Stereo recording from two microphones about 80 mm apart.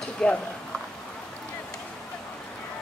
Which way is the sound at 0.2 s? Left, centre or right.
Centre.